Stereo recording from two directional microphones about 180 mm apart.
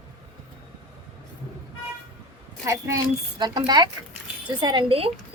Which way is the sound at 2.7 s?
20° right (ahead or behind).